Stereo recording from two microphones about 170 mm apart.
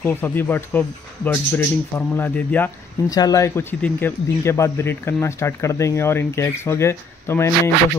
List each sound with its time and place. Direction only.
0.0 s speech: 10° left (ahead or behind)
3.1 s speech: 20° left (ahead or behind)